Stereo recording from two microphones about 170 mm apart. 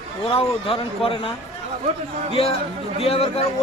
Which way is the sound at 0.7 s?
30° left (ahead or behind).